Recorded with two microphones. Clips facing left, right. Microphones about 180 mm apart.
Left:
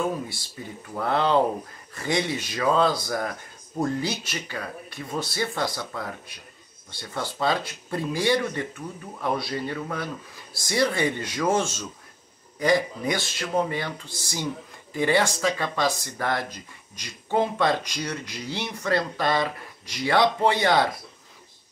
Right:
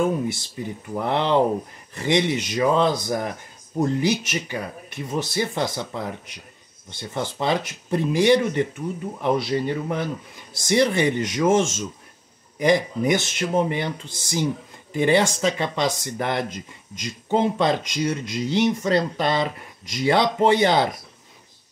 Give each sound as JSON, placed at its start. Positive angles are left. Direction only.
{"t": 0.6, "sound": "speech", "side_deg": -20}